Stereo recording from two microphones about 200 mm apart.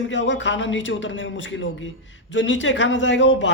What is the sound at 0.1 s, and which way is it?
A man's voice, 65° left (ahead or behind).